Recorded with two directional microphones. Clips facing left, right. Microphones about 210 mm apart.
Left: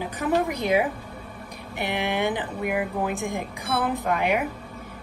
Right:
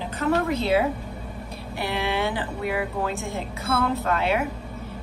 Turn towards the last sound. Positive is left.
turn(degrees=15)  # may be behind; listen again after turning